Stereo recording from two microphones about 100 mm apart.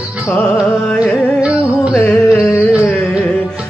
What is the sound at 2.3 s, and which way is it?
Music, 30° left (ahead or behind).